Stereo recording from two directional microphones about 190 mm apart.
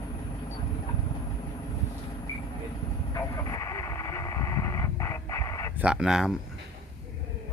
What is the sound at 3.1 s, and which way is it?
Radio, 15° left (ahead or behind).